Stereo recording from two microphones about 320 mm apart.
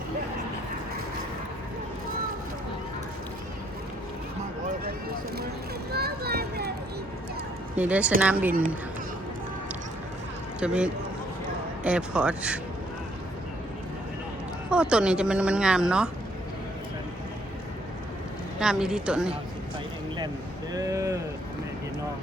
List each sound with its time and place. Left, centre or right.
5.9 s a sound: right
7.8 s speech: centre
10.6 s speech: centre
14.7 s speech: centre
18.6 s speech: centre
20.7 s vehicle: centre